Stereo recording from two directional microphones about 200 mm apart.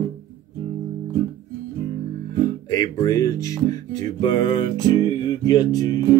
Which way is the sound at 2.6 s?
20° left (ahead or behind).